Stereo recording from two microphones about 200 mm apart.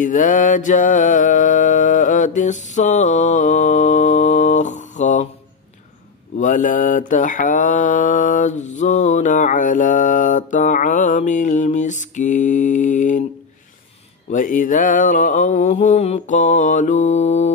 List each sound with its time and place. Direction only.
0.0 s mantra: 40° left (ahead or behind)
6.3 s mantra: 40° left (ahead or behind)
14.3 s mantra: 40° left (ahead or behind)